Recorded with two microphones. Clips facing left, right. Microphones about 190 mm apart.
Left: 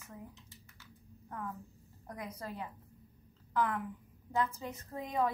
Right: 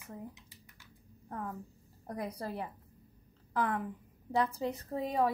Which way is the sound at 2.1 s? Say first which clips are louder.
Right 5 dB; 35° right (ahead or behind).